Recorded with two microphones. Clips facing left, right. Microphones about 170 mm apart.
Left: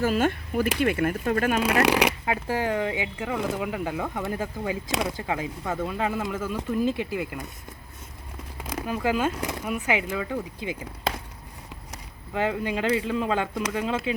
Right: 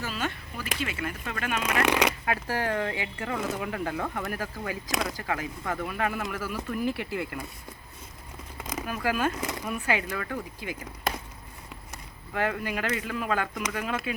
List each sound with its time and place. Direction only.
0.0 s speech: 50° left (ahead or behind)
1.2 s speech: 40° left (ahead or behind)
1.8 s speech: 10° left (ahead or behind)
9.0 s speech: 20° left (ahead or behind)
12.3 s speech: 20° left (ahead or behind)